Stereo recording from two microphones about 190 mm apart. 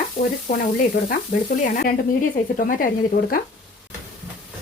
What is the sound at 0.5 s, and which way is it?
Speech, 40° left (ahead or behind).